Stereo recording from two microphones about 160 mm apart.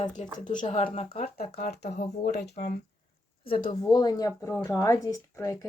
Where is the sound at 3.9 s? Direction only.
25° left (ahead or behind).